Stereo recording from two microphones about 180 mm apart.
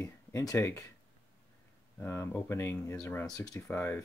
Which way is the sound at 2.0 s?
15° left (ahead or behind).